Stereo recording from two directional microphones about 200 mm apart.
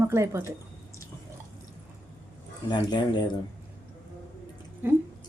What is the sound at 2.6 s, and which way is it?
Speech, 20° left (ahead or behind).